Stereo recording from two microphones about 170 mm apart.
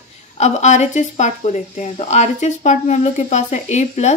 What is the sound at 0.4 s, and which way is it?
A woman's voice, 40° left (ahead or behind).